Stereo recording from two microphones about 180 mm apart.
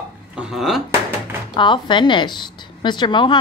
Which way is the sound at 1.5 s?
25° left (ahead or behind).